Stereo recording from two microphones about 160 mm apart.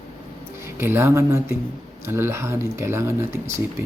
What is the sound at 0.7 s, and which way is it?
Speech, 15° right (ahead or behind).